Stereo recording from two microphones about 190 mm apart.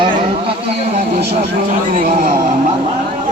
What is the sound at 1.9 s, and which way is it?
Music, 45° right (ahead or behind).